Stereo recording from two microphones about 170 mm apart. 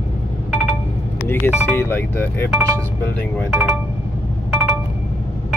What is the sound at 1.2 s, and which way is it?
Speech, 15° left (ahead or behind).